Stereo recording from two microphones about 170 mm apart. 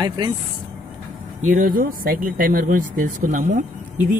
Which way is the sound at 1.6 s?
55° right (ahead or behind).